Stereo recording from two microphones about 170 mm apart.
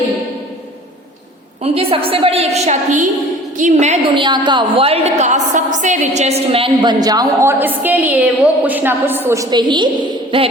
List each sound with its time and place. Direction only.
1.6 s a woman's voice: 35° right (ahead or behind)
4.1 s a woman's voice: 25° right (ahead or behind)
7.6 s a woman's voice: 10° right (ahead or behind); by 10.5 s 30° right (ahead or behind)